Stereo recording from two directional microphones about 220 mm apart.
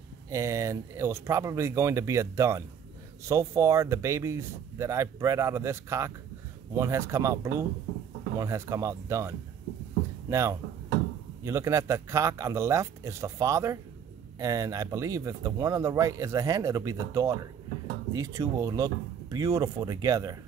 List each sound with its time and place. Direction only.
0.3 s speech: 15° right (ahead or behind)
10.3 s speech: 15° right (ahead or behind)